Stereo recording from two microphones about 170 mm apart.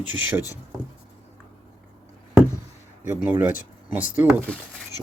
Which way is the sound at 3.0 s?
15° right (ahead or behind).